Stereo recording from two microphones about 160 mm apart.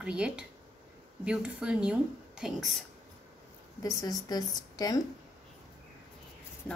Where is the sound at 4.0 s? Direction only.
20° left (ahead or behind).